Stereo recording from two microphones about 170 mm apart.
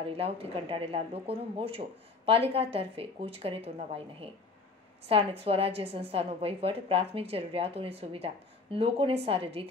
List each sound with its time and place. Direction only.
0.0 s speech: 35° right (ahead or behind)